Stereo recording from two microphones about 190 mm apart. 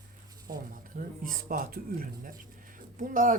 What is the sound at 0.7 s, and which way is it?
Speech, 45° right (ahead or behind).